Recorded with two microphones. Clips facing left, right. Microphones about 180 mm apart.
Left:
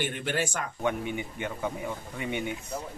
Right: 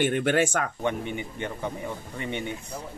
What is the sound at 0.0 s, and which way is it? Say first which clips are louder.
Speech: right 7 dB; 55° right (ahead or behind).